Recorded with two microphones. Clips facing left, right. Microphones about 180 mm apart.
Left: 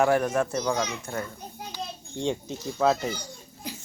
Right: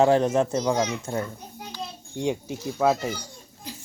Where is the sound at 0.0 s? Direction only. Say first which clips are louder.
Right 3 dB; 25° right (ahead or behind).